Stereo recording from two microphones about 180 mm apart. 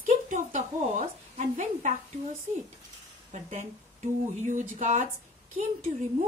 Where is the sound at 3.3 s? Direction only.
40° right (ahead or behind).